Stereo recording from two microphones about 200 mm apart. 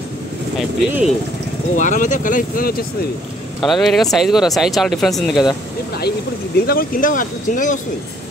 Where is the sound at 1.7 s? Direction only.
40° left (ahead or behind).